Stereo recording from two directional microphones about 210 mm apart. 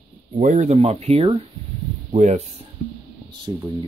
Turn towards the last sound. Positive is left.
turn(degrees=-20)  # may be behind; listen again after turning